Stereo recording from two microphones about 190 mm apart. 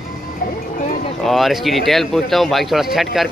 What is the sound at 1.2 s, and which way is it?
A man's voice, centre (ahead or behind).